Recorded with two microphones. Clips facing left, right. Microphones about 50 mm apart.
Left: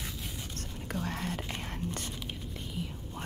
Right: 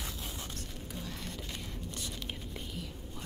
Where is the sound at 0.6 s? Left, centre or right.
Left.